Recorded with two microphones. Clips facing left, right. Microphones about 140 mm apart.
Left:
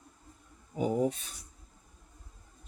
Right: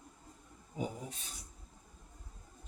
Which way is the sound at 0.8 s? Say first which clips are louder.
Left 12 dB; 65° left (ahead or behind).